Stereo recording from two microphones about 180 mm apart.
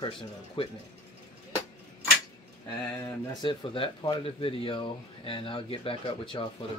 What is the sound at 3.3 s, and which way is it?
Speech, 30° left (ahead or behind).